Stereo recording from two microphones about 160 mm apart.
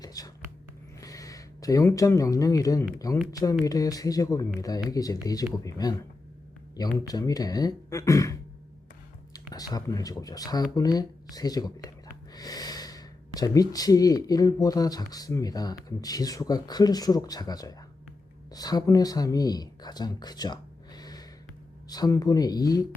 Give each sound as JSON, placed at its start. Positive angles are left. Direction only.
{"t": 0.0, "sound": "a sound", "side_deg": 25}
{"t": 1.0, "sound": "speech", "side_deg": 20}
{"t": 7.1, "sound": "speech", "side_deg": 25}